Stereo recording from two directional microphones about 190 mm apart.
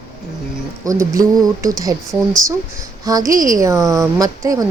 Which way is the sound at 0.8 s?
15° right (ahead or behind).